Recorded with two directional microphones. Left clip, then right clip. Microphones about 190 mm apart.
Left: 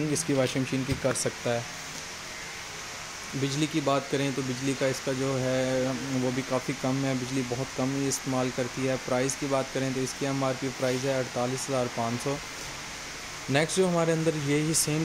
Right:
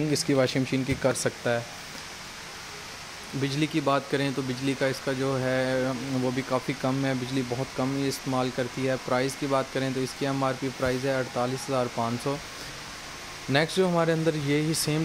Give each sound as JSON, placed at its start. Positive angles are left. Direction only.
{"t": 0.1, "sound": "speech", "side_deg": -20}
{"t": 3.4, "sound": "speech", "side_deg": -10}
{"t": 13.5, "sound": "speech", "side_deg": -10}